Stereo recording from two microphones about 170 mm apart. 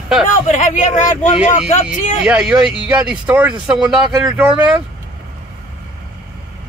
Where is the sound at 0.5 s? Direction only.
50° left (ahead or behind).